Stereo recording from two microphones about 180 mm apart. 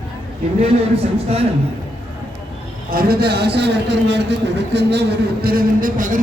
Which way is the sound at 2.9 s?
55° right (ahead or behind).